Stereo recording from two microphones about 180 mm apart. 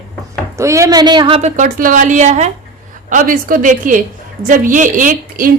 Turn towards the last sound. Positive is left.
turn(degrees=-45)  # may be behind; listen again after turning